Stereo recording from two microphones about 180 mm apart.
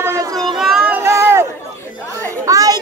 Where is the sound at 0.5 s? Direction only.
Centre (ahead or behind).